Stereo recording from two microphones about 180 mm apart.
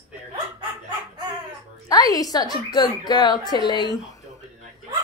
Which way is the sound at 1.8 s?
20° left (ahead or behind).